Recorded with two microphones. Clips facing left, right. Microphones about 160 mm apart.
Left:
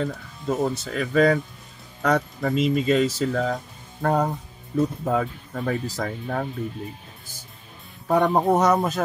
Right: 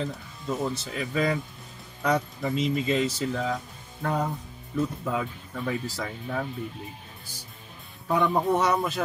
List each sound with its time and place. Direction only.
0.0 s speech: 45° left (ahead or behind)
8.1 s speech: 45° left (ahead or behind)